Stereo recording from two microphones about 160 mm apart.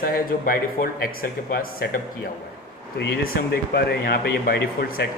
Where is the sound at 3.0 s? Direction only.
90° left.